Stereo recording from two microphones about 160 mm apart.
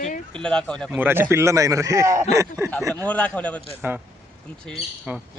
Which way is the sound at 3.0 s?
10° left (ahead or behind).